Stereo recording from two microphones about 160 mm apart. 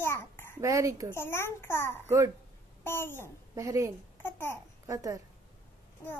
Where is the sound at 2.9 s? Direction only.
15° left (ahead or behind).